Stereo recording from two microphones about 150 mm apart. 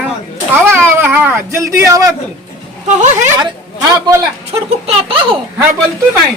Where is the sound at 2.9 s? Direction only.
55° right (ahead or behind).